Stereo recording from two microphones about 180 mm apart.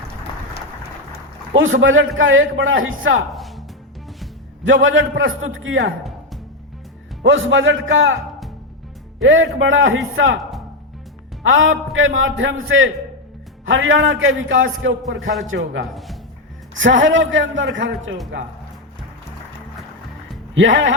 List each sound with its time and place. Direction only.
1.5 s a man's voice: 90° right
3.3 s music: centre (ahead or behind)
4.6 s a man's voice: 90° right
7.3 s a man's voice: 90° right
9.2 s a man's voice: 90° right
11.4 s a man's voice: 90° right
20.6 s a man's voice: 90° right